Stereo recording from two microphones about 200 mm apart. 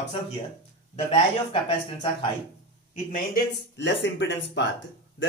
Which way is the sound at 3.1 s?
50° left (ahead or behind).